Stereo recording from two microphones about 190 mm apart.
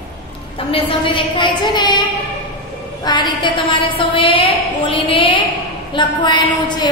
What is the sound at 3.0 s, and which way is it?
A woman's voice, 25° left (ahead or behind).